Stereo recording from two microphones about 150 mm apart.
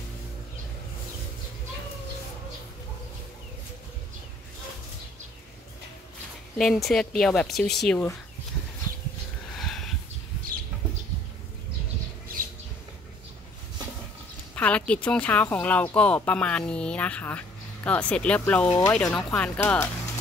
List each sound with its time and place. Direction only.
6.6 s speech: centre (ahead or behind)
9.6 s a sound: centre (ahead or behind)
14.5 s speech: 10° left (ahead or behind)
18.7 s speech: 20° left (ahead or behind)
18.9 s speech: 5° left (ahead or behind)